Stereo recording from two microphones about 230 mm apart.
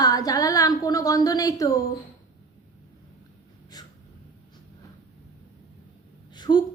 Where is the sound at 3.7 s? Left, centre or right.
Centre.